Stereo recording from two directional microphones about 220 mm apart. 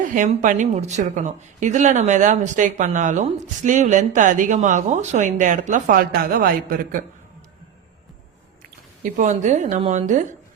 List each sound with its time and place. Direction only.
0.0 s speech: 35° right (ahead or behind)
9.1 s speech: 35° right (ahead or behind)